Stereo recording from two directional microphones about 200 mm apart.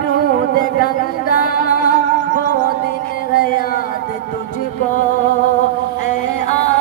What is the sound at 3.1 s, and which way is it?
Music, 45° left (ahead or behind).